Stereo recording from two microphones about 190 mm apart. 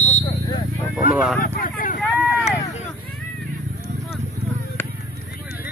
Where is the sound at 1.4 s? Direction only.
45° left (ahead or behind).